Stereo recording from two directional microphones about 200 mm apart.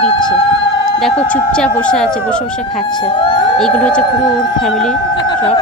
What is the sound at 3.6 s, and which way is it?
Speech, 5° left (ahead or behind).